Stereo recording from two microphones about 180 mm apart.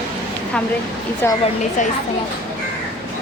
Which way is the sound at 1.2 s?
10° left (ahead or behind).